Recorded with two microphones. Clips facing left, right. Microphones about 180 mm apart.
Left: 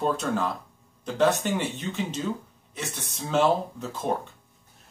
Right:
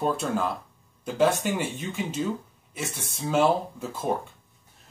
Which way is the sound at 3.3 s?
10° right (ahead or behind).